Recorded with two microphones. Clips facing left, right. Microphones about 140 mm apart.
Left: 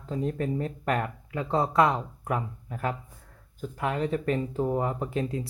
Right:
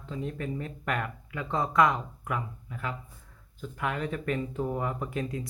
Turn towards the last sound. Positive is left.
turn(degrees=30)  # may be behind; listen again after turning